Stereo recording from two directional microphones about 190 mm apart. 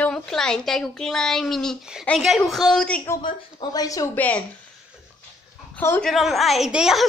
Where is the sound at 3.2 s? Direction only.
20° left (ahead or behind).